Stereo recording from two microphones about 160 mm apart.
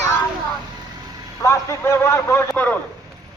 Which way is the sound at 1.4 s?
15° left (ahead or behind).